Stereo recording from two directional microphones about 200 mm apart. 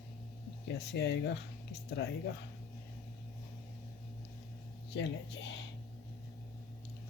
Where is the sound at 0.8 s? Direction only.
60° left (ahead or behind).